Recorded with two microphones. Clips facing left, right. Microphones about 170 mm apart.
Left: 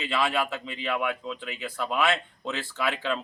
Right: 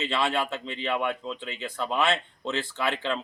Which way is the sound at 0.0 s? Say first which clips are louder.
Even; 25° right (ahead or behind).